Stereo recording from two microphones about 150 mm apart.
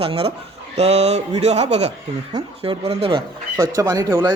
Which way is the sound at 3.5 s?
20° right (ahead or behind).